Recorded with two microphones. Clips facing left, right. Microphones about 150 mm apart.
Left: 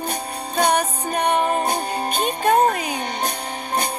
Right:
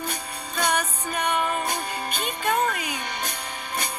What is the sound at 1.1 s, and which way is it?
Music, 45° left (ahead or behind).